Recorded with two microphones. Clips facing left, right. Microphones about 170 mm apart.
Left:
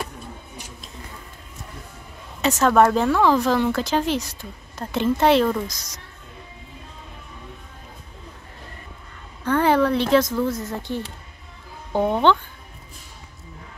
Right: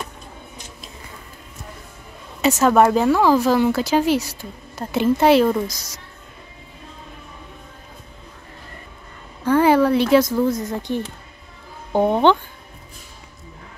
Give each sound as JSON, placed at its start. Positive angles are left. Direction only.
{"t": 2.4, "sound": "speech", "side_deg": -5}
{"t": 9.4, "sound": "speech", "side_deg": -10}